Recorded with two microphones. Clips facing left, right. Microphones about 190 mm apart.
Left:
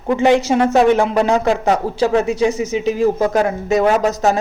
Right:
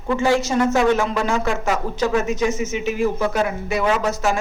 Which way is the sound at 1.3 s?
35° left (ahead or behind).